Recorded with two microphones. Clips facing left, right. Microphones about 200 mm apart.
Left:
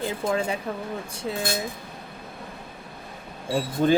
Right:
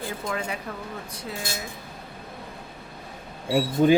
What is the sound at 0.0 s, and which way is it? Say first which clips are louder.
Speech: left 5 dB; 25° left (ahead or behind).